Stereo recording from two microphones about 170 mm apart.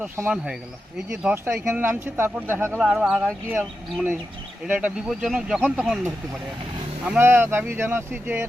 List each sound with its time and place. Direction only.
1.1 s speech: 10° right (ahead or behind)
2.7 s speech: centre (ahead or behind)
7.0 s speech: 10° right (ahead or behind)